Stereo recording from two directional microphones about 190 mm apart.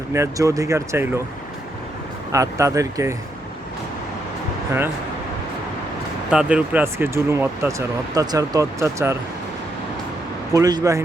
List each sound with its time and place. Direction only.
0.1 s speech: 15° right (ahead or behind)
2.3 s speech: 15° right (ahead or behind)
6.3 s speech: 5° right (ahead or behind)
10.5 s speech: 20° right (ahead or behind)